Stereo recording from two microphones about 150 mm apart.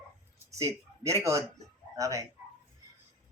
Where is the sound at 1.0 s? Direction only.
20° right (ahead or behind).